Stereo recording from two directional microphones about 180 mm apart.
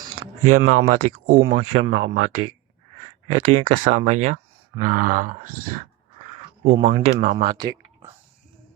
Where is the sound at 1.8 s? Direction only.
90° right.